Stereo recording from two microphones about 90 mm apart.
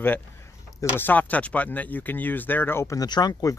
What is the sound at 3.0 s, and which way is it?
Speech, 45° left (ahead or behind).